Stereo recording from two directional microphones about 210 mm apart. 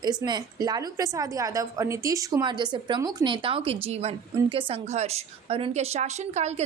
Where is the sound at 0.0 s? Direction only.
20° right (ahead or behind).